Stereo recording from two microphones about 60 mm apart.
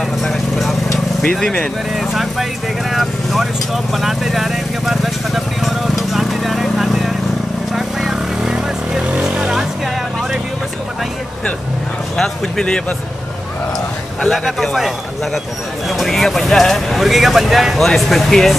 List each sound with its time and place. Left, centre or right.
0.2 s vehicle: centre
2.0 s speech: centre
2.9 s vehicle: centre
12.2 s speech: centre
14.3 s speech: centre
15.9 s speech: centre